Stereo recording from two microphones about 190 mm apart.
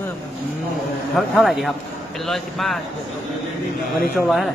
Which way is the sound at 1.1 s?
Centre (ahead or behind).